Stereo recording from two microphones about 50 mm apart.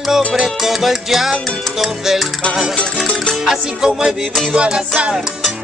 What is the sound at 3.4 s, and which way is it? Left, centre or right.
Music, centre.